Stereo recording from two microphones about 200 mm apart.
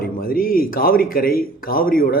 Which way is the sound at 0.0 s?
45° left (ahead or behind).